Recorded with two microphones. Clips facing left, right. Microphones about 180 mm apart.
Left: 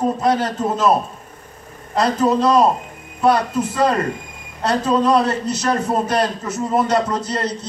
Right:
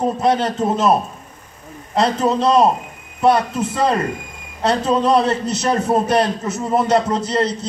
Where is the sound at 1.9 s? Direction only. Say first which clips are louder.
Even; 25° right (ahead or behind).